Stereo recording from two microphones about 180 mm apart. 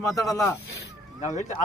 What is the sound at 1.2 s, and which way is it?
Speech, 40° left (ahead or behind).